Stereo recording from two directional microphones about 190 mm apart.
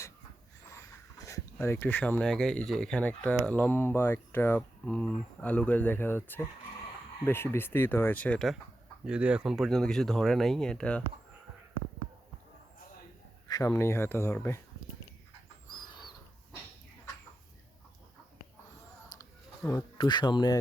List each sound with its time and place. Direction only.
0.7 s speech: 15° left (ahead or behind)
9.0 s speech: 5° right (ahead or behind)
13.5 s speech: 15° left (ahead or behind)
19.2 s speech: 15° left (ahead or behind)